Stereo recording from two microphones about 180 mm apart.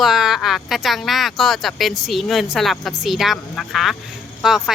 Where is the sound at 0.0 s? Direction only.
Centre (ahead or behind).